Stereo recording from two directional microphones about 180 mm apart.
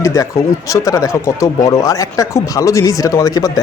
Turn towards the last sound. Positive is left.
turn(degrees=20)  # may be behind; listen again after turning